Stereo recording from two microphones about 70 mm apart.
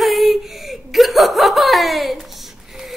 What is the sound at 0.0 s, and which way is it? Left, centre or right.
Laughter, centre.